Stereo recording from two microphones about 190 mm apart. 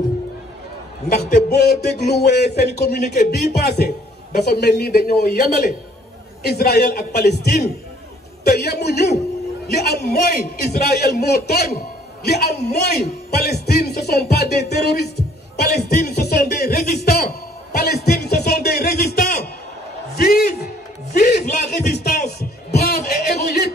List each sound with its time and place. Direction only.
1.3 s a man's voice: 55° left (ahead or behind)
20.2 s a sound: 55° left (ahead or behind)
21.2 s music: 55° left (ahead or behind)
21.5 s a man's voice: 60° left (ahead or behind)